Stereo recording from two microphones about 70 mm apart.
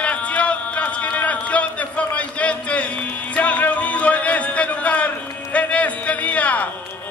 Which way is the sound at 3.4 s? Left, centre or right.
Left.